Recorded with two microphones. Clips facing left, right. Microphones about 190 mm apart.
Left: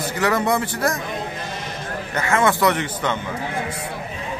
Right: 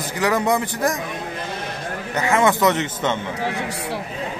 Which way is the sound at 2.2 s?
15° right (ahead or behind).